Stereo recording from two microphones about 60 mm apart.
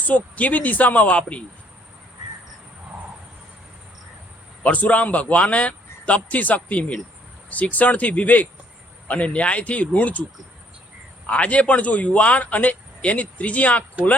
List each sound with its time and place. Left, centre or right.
0.0 s speech: left
4.6 s speech: left
11.3 s speech: left